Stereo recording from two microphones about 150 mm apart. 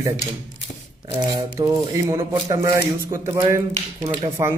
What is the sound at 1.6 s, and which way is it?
A man's voice, 20° right (ahead or behind).